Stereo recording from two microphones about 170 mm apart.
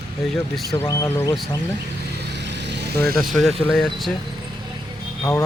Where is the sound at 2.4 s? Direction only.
90° right.